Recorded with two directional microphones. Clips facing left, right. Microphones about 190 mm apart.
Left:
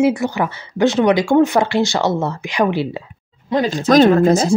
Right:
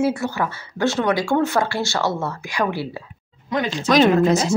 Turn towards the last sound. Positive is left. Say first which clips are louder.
# left 4 dB
turn(degrees=35)  # may be behind; listen again after turning